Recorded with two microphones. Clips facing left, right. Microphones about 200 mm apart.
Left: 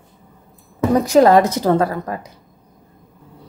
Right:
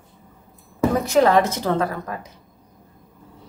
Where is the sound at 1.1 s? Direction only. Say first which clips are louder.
Left 6 dB; 40° left (ahead or behind).